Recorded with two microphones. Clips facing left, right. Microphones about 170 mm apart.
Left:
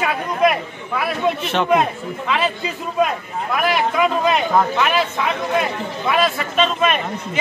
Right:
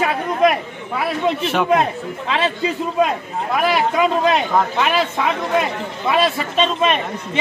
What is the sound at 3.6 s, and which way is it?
Speech, 30° right (ahead or behind).